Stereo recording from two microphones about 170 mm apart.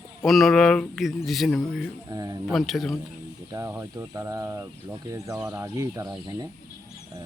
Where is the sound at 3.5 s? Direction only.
15° right (ahead or behind).